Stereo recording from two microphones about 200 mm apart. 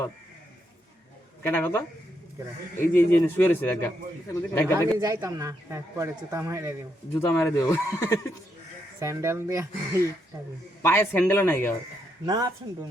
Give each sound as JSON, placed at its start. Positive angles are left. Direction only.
{"t": 1.5, "sound": "speech", "side_deg": 10}
{"t": 4.9, "sound": "speech", "side_deg": -15}
{"t": 7.2, "sound": "speech", "side_deg": 10}
{"t": 9.0, "sound": "speech", "side_deg": -15}
{"t": 10.8, "sound": "speech", "side_deg": 10}
{"t": 12.2, "sound": "speech", "side_deg": -20}